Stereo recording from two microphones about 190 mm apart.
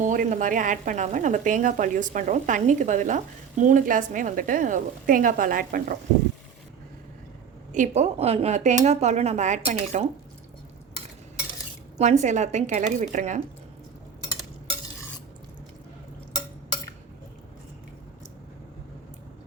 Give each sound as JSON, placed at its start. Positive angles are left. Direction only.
{"t": 0.0, "sound": "a woman's voice", "side_deg": -40}
{"t": 7.7, "sound": "a woman's voice", "side_deg": -40}
{"t": 11.9, "sound": "a woman's voice", "side_deg": -35}